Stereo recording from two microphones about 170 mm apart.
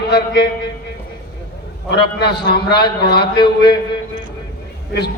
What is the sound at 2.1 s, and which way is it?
A man's voice, 75° left (ahead or behind).